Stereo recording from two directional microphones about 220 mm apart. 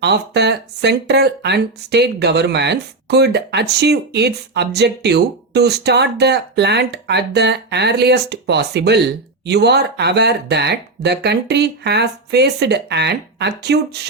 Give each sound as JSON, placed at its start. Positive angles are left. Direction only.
{"t": 0.0, "sound": "speech", "side_deg": -50}